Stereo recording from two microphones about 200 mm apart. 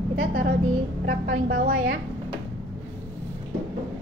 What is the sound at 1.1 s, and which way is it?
Speech, 45° right (ahead or behind).